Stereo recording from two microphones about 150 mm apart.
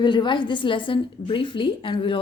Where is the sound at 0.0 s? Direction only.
30° left (ahead or behind).